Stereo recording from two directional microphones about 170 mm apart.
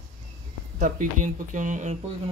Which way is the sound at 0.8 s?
50° right (ahead or behind).